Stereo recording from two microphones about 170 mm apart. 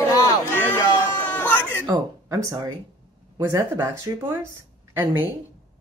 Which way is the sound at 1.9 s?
15° right (ahead or behind).